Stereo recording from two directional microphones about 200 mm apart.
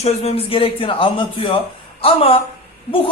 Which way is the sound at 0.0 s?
30° left (ahead or behind).